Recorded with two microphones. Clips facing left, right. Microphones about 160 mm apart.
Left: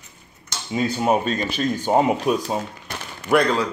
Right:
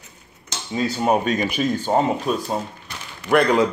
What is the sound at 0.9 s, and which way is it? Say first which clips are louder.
Speech: right 1 dB; 5° left (ahead or behind).